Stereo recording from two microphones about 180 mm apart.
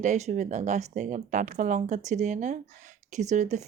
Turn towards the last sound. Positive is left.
turn(degrees=-40)  # may be behind; listen again after turning